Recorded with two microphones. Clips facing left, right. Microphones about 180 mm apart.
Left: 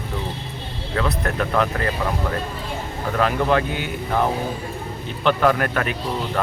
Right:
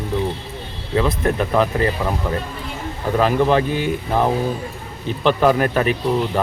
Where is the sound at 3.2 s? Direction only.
20° right (ahead or behind).